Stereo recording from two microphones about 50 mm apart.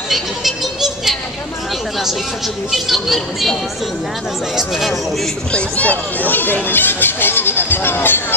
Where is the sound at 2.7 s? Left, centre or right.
Centre.